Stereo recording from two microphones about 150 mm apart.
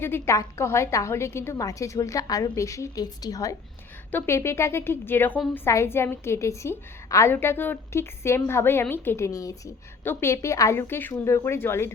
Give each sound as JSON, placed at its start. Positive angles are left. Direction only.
{"t": 0.0, "sound": "a woman's voice", "side_deg": 15}